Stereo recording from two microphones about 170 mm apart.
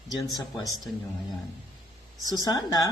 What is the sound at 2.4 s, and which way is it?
Speech, 20° left (ahead or behind).